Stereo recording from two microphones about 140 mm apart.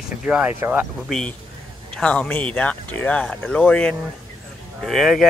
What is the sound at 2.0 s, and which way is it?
Speech, 10° left (ahead or behind).